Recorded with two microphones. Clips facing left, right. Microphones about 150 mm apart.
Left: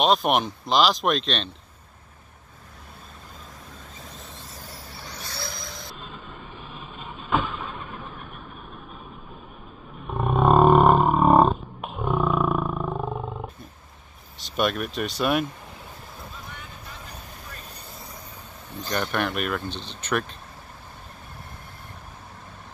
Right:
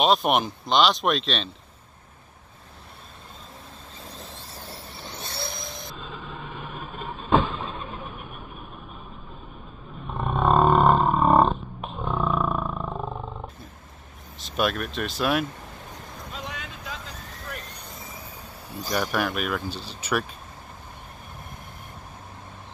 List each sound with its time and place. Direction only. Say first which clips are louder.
0.0 s speech: even; centre (ahead or behind)
4.0 s vehicle: right 3 dB; 30° right (ahead or behind)
10.2 s roar: left 3 dB; centre (ahead or behind)
14.4 s speech: left 1 dB; centre (ahead or behind)
16.3 s vehicle: right 5 dB; 90° right
17.6 s train: right 2 dB; 5° left (ahead or behind)
18.7 s speech: right 1 dB; 10° right (ahead or behind)